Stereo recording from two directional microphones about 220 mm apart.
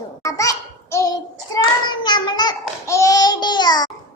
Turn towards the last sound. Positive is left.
turn(degrees=20)  # may be behind; listen again after turning